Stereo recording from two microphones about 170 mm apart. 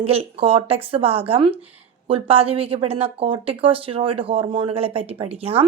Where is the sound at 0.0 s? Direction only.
35° right (ahead or behind).